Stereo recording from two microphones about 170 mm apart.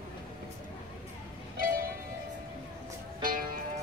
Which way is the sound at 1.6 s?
60° right (ahead or behind).